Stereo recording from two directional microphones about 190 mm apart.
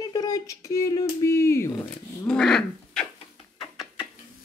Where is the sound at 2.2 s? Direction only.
5° left (ahead or behind).